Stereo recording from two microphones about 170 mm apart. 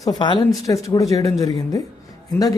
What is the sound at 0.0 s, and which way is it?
Speech, 25° left (ahead or behind).